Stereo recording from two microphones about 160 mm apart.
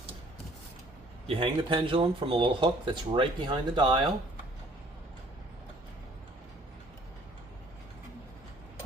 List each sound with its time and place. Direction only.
1.3 s speech: 35° right (ahead or behind)